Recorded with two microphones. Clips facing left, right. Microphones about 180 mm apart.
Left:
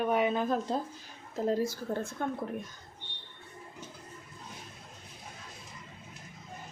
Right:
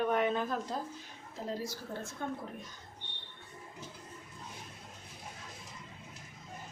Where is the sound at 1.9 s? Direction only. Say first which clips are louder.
Left 8 dB; 45° left (ahead or behind).